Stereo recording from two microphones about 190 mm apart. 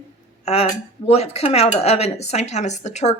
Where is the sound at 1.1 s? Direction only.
35° left (ahead or behind).